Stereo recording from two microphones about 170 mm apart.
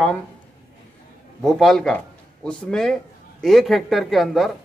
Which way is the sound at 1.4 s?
Centre (ahead or behind).